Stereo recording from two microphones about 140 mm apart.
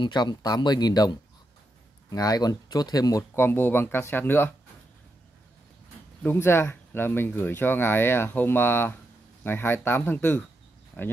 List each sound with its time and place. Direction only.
0.0 s speech: 30° left (ahead or behind); by 4.6 s 15° left (ahead or behind)
6.2 s speech: 15° left (ahead or behind)